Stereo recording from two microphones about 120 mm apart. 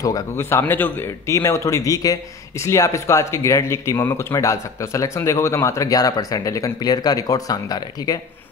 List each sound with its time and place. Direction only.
0.0 s speech: 25° left (ahead or behind)